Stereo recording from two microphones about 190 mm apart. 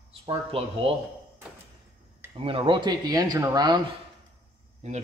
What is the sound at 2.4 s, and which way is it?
Speech, 25° right (ahead or behind).